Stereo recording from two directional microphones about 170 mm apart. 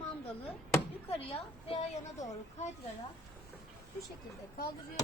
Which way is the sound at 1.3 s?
35° left (ahead or behind).